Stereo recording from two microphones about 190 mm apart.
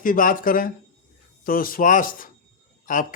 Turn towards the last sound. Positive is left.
turn(degrees=45)  # may be behind; listen again after turning